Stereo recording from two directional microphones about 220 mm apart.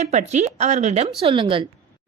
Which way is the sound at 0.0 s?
30° right (ahead or behind).